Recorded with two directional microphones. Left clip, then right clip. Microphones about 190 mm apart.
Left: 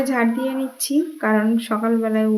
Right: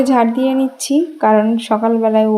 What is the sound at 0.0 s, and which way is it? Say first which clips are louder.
Speech: right 7 dB; 20° right (ahead or behind).